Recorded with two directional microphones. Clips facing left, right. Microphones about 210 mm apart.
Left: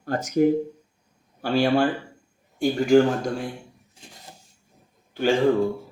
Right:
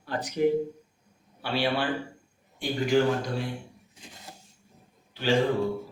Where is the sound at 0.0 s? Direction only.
45° left (ahead or behind).